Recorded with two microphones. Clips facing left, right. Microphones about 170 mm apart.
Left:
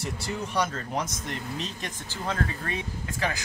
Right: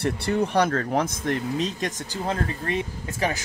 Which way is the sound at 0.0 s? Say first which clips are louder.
Right 9 dB; 60° right (ahead or behind).